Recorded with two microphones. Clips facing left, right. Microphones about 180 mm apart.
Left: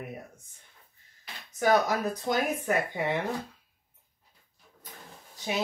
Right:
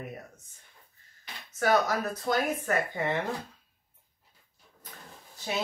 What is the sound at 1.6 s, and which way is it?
Speech, 15° left (ahead or behind).